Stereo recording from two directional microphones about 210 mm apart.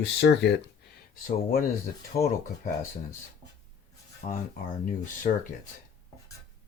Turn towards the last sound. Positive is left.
turn(degrees=35)  # may be behind; listen again after turning